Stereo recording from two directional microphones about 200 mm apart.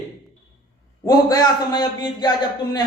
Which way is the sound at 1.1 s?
20° left (ahead or behind).